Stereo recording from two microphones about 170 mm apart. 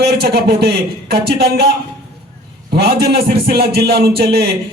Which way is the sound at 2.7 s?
70° right (ahead or behind).